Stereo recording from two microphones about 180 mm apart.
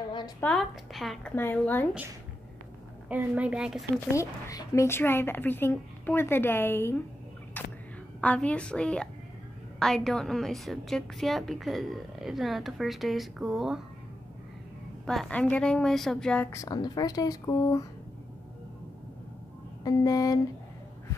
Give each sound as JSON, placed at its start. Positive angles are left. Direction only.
{"t": 0.4, "sound": "a woman's voice", "side_deg": 5}
{"t": 3.1, "sound": "a woman's voice", "side_deg": -10}
{"t": 4.1, "sound": "a woman's voice", "side_deg": 20}
{"t": 8.2, "sound": "a woman's voice", "side_deg": 5}
{"t": 15.0, "sound": "a woman's voice", "side_deg": 5}
{"t": 16.5, "sound": "speech", "side_deg": 20}
{"t": 19.8, "sound": "speech", "side_deg": 20}